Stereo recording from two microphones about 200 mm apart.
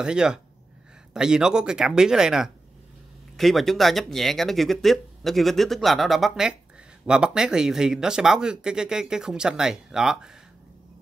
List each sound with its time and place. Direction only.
0.0 s speech: 5° right (ahead or behind)